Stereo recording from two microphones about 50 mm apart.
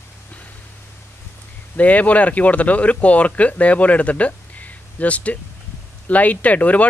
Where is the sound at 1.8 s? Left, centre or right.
Left.